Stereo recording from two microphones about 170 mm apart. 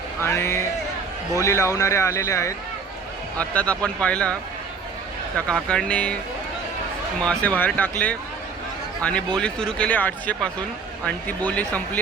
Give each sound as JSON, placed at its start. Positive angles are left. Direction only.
{"t": 0.2, "sound": "speech", "side_deg": 15}
{"t": 5.5, "sound": "speech", "side_deg": 5}
{"t": 7.3, "sound": "speech", "side_deg": 10}